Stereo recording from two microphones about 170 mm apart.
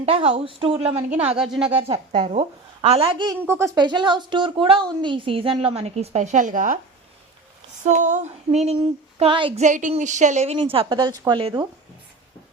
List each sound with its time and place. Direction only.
0.0 s a woman's voice: 35° right (ahead or behind)
1.4 s speech: 5° right (ahead or behind)
1.7 s a woman's voice: 35° right (ahead or behind)
3.4 s speech: 15° right (ahead or behind)
3.8 s a woman's voice: 25° right (ahead or behind); by 6.7 s 50° right (ahead or behind)
7.9 s a woman's voice: 45° right (ahead or behind)
9.6 s a woman's voice: 45° right (ahead or behind); by 11.7 s 30° right (ahead or behind)